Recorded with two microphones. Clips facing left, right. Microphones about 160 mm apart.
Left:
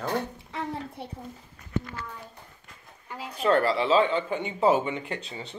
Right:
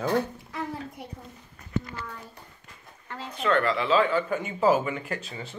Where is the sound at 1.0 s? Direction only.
30° left (ahead or behind).